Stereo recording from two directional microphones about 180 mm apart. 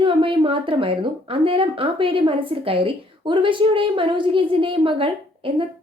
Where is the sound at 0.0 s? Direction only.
30° right (ahead or behind).